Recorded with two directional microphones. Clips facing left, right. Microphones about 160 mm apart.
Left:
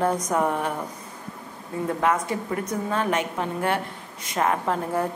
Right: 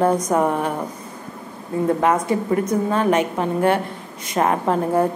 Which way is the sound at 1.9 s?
35° right (ahead or behind).